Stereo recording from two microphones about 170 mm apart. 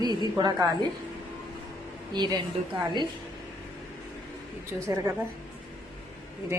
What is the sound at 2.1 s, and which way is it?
Speech, 25° right (ahead or behind).